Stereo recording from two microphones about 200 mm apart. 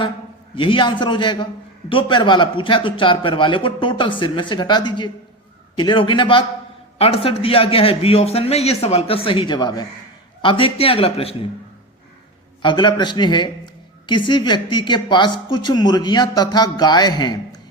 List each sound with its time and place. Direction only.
0.5 s a woman's voice: 25° left (ahead or behind)
12.6 s a woman's voice: 25° left (ahead or behind)